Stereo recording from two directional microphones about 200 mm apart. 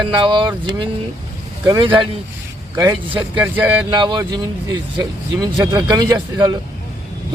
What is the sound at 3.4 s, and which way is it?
Speech, 10° right (ahead or behind).